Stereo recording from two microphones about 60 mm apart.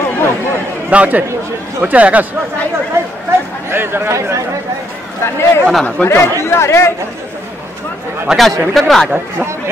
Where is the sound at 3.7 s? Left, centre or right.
Right.